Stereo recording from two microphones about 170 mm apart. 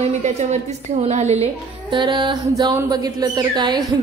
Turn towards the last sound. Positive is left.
turn(degrees=-25)  # may be behind; listen again after turning